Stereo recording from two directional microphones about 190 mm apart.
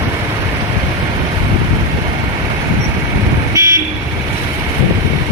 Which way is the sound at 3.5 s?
15° right (ahead or behind).